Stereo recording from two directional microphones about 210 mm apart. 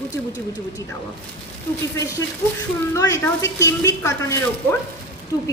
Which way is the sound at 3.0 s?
15° left (ahead or behind).